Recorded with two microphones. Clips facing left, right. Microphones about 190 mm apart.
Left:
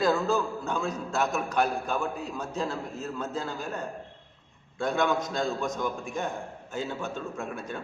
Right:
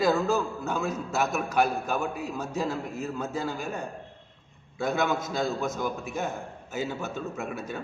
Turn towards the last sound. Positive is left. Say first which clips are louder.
# right 1 dB
turn(degrees=-10)  # may be behind; listen again after turning